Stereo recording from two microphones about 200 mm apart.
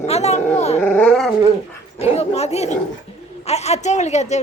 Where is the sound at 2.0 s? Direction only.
30° left (ahead or behind).